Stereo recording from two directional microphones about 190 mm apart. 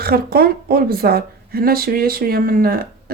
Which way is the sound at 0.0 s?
55° right (ahead or behind).